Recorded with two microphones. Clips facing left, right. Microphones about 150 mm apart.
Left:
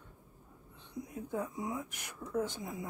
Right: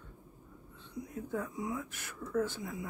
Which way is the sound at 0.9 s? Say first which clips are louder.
Even; 20° left (ahead or behind).